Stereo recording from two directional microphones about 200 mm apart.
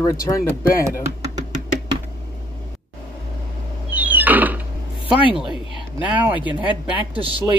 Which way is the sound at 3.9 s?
10° right (ahead or behind).